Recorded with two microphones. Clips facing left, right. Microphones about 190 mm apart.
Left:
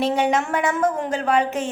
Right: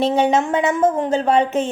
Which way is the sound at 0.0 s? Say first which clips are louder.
Right 4 dB; 25° right (ahead or behind).